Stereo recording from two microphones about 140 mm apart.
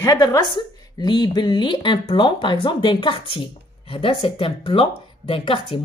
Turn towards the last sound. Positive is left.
turn(degrees=40)  # may be behind; listen again after turning